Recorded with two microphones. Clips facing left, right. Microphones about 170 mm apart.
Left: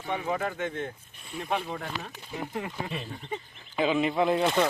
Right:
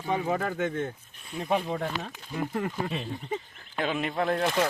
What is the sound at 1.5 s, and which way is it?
Speech, 30° right (ahead or behind).